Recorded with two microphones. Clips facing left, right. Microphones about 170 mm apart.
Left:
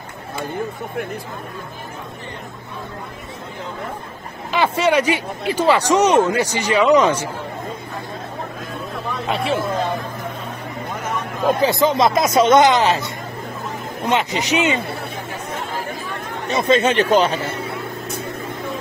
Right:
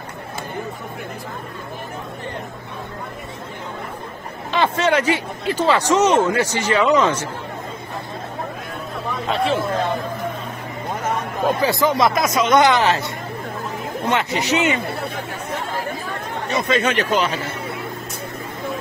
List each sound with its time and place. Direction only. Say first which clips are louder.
4.5 s speech: left 1 dB; 10° left (ahead or behind)
9.3 s speech: right 1 dB; 5° left (ahead or behind)
11.6 s speech: left 2 dB; 20° left (ahead or behind)
14.0 s speech: left 1 dB; 20° left (ahead or behind)
16.5 s speech: left 4 dB; 25° left (ahead or behind)